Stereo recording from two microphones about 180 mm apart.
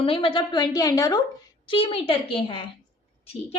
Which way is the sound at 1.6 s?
30° left (ahead or behind).